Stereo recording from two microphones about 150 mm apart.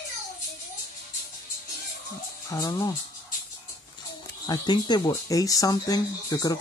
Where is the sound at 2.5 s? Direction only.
25° left (ahead or behind).